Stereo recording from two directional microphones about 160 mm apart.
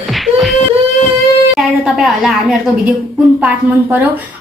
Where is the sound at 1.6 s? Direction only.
Centre (ahead or behind).